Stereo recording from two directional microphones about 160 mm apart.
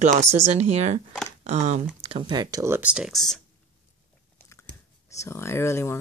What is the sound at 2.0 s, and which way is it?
Speech, 35° right (ahead or behind).